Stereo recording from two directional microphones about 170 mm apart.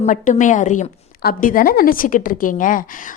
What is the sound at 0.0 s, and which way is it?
A woman's voice, 50° left (ahead or behind).